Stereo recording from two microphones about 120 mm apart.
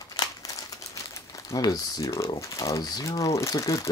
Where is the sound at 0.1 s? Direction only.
30° left (ahead or behind).